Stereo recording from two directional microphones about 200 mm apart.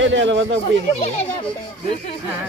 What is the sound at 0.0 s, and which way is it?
Speech, 65° right (ahead or behind).